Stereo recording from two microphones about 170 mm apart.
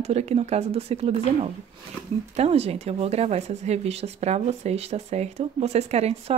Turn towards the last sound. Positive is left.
turn(degrees=-40)  # may be behind; listen again after turning